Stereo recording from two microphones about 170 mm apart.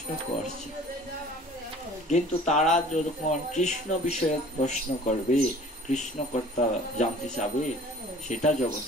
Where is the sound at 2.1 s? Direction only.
45° left (ahead or behind).